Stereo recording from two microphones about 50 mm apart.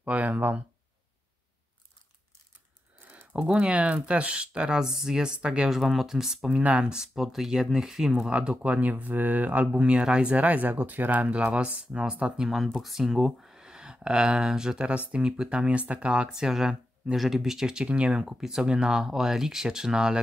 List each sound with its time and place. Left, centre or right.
0.0 s speech: right
3.3 s speech: centre
5.7 s speech: centre
6.5 s speech: right
7.2 s speech: centre
8.3 s speech: right
10.3 s speech: right
12.4 s speech: centre; by 18.2 s right
18.2 s speech: centre